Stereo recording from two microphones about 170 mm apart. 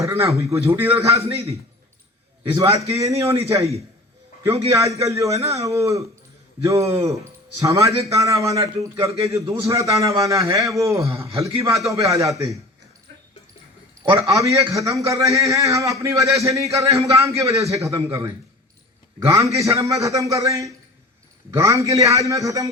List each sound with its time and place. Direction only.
0.0 s a man's voice: 15° right (ahead or behind)
2.5 s a man's voice: 20° right (ahead or behind)
4.7 s a man's voice: 20° right (ahead or behind)
14.2 s a man's voice: 20° right (ahead or behind)